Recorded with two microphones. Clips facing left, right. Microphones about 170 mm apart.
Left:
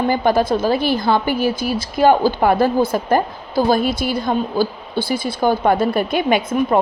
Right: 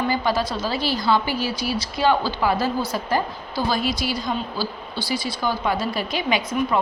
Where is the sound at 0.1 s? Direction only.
55° left (ahead or behind).